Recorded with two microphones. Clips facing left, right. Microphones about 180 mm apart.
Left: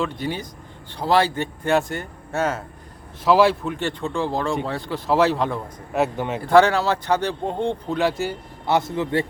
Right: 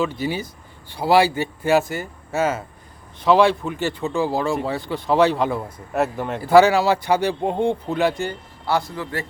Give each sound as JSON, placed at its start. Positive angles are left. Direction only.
{"t": 0.0, "sound": "speech", "side_deg": -5}
{"t": 8.6, "sound": "a man's voice", "side_deg": 20}